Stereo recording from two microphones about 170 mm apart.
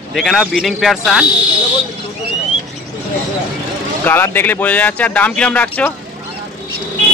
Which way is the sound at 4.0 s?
10° left (ahead or behind).